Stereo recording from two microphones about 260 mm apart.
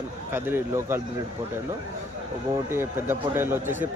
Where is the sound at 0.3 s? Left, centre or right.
Centre.